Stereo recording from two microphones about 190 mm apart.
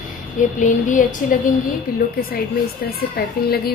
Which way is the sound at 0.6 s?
40° left (ahead or behind).